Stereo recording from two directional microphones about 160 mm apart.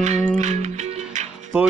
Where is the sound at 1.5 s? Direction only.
10° right (ahead or behind).